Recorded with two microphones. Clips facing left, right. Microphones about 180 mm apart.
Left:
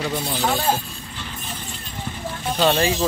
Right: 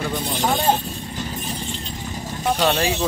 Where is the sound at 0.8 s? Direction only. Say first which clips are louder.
Right 6 dB; 40° right (ahead or behind).